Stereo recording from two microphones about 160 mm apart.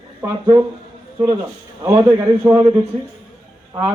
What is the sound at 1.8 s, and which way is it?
Speech, 20° right (ahead or behind).